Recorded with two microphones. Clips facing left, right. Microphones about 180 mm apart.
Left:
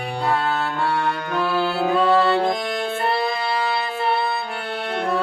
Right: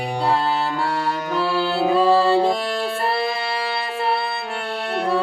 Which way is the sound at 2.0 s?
30° right (ahead or behind).